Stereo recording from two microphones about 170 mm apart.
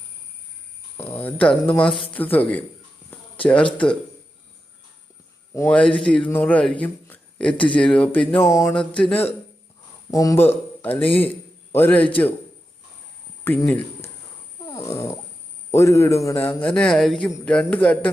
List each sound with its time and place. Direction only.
0.9 s a man's voice: 10° left (ahead or behind)
5.5 s a man's voice: 10° left (ahead or behind)
10.1 s a man's voice: 20° left (ahead or behind)
13.4 s speech: 10° left (ahead or behind)
14.7 s a sound: 15° left (ahead or behind)
15.7 s a man's voice: 15° left (ahead or behind)